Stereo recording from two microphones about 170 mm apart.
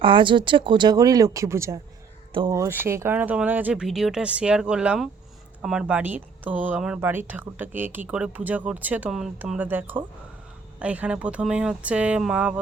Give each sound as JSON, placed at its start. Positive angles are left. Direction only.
{"t": 0.0, "sound": "speech", "side_deg": -30}